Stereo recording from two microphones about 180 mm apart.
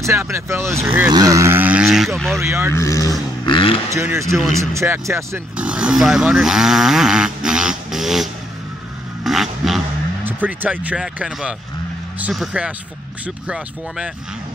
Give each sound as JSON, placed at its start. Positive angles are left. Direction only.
{"t": 0.0, "sound": "speech", "side_deg": -15}
{"t": 2.3, "sound": "speech", "side_deg": -15}
{"t": 2.7, "sound": "speech", "side_deg": 15}
{"t": 3.9, "sound": "speech", "side_deg": -15}
{"t": 9.2, "sound": "vehicle", "side_deg": 0}
{"t": 10.2, "sound": "speech", "side_deg": -10}